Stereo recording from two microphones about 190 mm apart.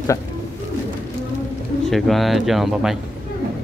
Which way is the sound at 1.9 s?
Centre (ahead or behind).